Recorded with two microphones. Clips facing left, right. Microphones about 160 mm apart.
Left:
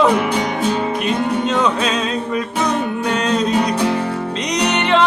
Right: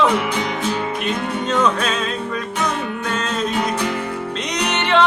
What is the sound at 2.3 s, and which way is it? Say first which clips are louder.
Music: left 4 dB; 25° left (ahead or behind).